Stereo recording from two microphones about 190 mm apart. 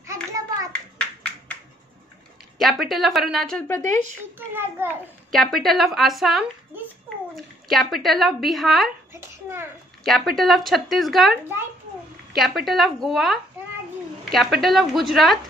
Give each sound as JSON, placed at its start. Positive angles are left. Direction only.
{"t": 0.0, "sound": "hands", "side_deg": -15}
{"t": 2.6, "sound": "speech", "side_deg": 0}
{"t": 4.4, "sound": "a child's voice", "side_deg": -10}
{"t": 5.3, "sound": "speech", "side_deg": 0}
{"t": 9.1, "sound": "a child's voice", "side_deg": -15}
{"t": 10.0, "sound": "speech", "side_deg": 0}
{"t": 12.4, "sound": "speech", "side_deg": 0}